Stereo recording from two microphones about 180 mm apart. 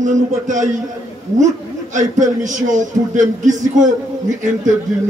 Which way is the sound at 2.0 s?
45° right (ahead or behind).